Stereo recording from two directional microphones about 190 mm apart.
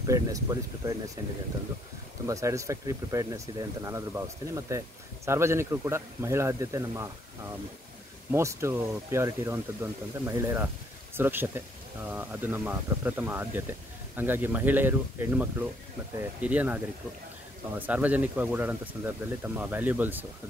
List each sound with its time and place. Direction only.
0.0 s speech: 15° right (ahead or behind)
2.2 s speech: 15° right (ahead or behind)
8.3 s speech: 15° right (ahead or behind)